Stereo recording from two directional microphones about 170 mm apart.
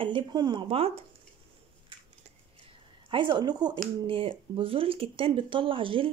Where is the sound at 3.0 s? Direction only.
30° right (ahead or behind).